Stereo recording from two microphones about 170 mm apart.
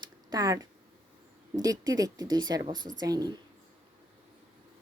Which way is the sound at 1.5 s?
20° right (ahead or behind).